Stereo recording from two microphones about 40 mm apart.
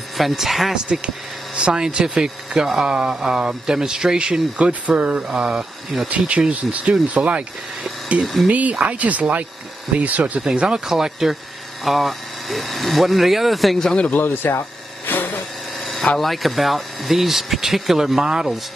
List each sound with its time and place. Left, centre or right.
0.2 s speech: centre
1.0 s speech: right
10.5 s speech: right
10.9 s speech: centre
14.1 s speech: left
15.0 s a sound: left
16.2 s speech: centre